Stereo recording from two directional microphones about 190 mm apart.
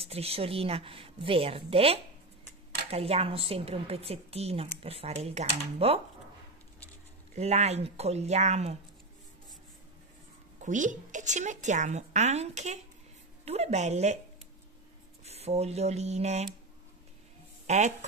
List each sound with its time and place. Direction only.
0.0 s a woman's voice: 30° right (ahead or behind)
7.3 s a woman's voice: 35° right (ahead or behind)
10.6 s a woman's voice: 40° right (ahead or behind)
15.2 s a woman's voice: 35° right (ahead or behind)
17.6 s speech: 35° right (ahead or behind)